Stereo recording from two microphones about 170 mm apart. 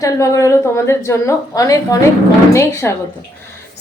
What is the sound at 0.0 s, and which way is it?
A woman's voice, 20° left (ahead or behind).